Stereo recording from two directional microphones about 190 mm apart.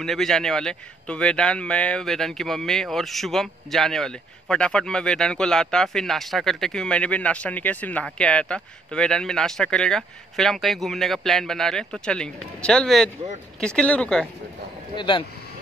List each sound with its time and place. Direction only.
0.0 s a man's voice: centre (ahead or behind)
15.0 s speech: 25° left (ahead or behind)